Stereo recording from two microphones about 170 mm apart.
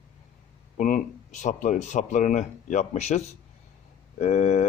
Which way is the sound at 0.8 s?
45° left (ahead or behind).